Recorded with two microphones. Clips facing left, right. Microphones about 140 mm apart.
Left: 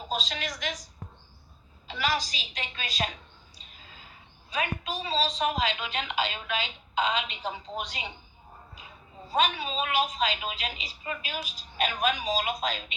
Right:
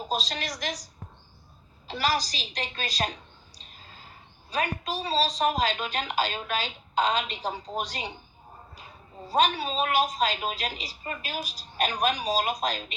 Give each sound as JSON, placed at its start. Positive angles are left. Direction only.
{"t": 0.1, "sound": "a woman's voice", "side_deg": -40}
{"t": 1.9, "sound": "a woman's voice", "side_deg": -40}